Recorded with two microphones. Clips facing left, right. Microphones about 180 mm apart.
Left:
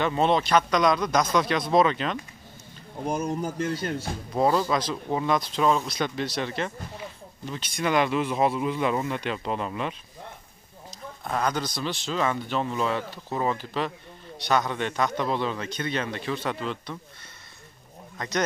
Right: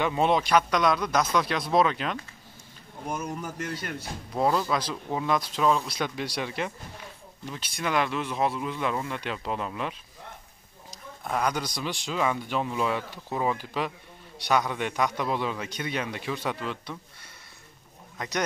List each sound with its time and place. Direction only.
0.0 s speech: 10° right (ahead or behind)
3.1 s speech: 35° left (ahead or behind)
4.3 s speech: 5° left (ahead or behind)
11.2 s speech: 10° right (ahead or behind)
18.1 s a sound: 10° right (ahead or behind)